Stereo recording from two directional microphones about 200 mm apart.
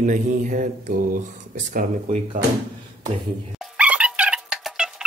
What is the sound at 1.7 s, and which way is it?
Mantra, 40° right (ahead or behind).